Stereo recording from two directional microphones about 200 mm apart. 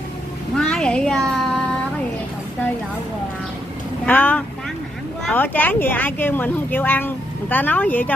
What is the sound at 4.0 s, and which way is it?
Vehicle, 10° left (ahead or behind).